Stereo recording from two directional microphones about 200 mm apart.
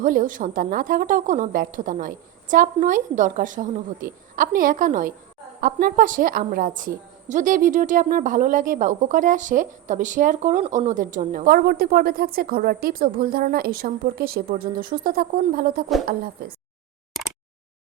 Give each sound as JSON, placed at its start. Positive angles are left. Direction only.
{"t": 0.0, "sound": "a woman's voice", "side_deg": -40}